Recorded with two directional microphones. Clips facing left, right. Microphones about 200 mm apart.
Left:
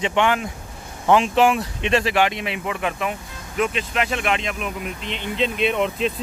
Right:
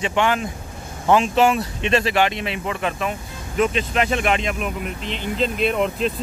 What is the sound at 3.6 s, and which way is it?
Speech, centre (ahead or behind).